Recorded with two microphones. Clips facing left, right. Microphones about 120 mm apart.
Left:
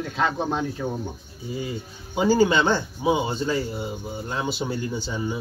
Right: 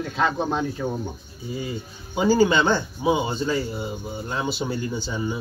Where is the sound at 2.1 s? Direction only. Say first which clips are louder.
Right 1 dB; 5° left (ahead or behind).